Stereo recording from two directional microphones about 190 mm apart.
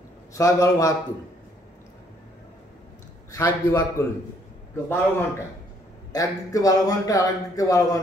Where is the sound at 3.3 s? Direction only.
15° left (ahead or behind).